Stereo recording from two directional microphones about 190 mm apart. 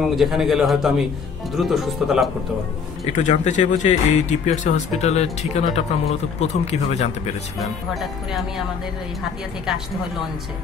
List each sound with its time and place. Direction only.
0.1 s speech: centre (ahead or behind)
3.1 s speech: 40° left (ahead or behind)
7.5 s speech: centre (ahead or behind)